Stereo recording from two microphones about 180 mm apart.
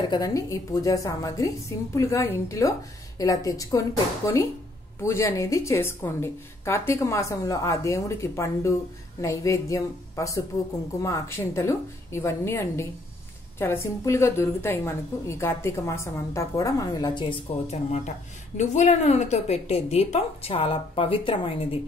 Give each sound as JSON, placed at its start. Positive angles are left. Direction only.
{"t": 0.1, "sound": "a woman's voice", "side_deg": 20}